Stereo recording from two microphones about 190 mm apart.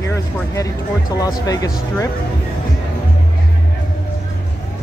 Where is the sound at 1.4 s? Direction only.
20° left (ahead or behind).